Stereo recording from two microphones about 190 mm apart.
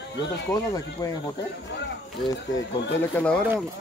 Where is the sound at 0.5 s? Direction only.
15° left (ahead or behind).